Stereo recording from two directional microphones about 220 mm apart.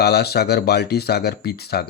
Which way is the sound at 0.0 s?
45° left (ahead or behind).